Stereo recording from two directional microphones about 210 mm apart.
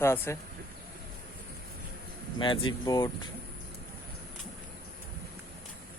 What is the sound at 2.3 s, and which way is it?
Speech, 25° left (ahead or behind).